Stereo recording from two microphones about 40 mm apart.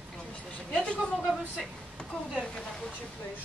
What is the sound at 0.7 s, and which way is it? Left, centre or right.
Speech, left.